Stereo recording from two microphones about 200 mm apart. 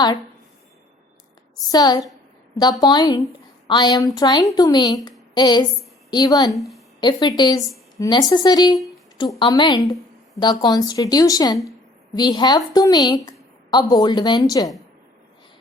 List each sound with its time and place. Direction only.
1.7 s a woman's voice: 20° left (ahead or behind)
6.6 s a woman's voice: centre (ahead or behind)
7.0 s a woman's voice: 20° left (ahead or behind)